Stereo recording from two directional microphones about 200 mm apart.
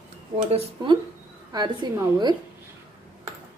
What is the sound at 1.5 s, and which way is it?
Speech, 20° right (ahead or behind).